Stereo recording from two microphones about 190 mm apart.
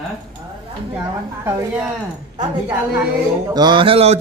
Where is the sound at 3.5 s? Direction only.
25° right (ahead or behind).